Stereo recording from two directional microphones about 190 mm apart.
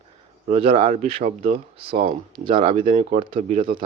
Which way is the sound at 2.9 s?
45° right (ahead or behind).